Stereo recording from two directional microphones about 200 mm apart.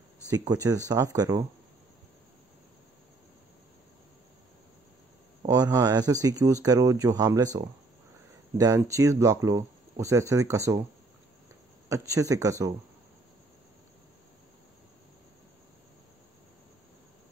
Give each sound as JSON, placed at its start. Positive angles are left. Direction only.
{"t": 0.3, "sound": "speech", "side_deg": -20}
{"t": 5.5, "sound": "speech", "side_deg": -20}
{"t": 11.9, "sound": "speech", "side_deg": -15}